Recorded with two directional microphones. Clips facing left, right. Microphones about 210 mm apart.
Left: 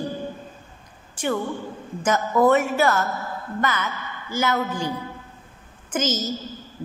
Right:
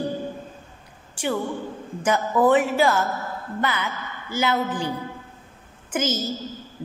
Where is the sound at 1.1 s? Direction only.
15° right (ahead or behind).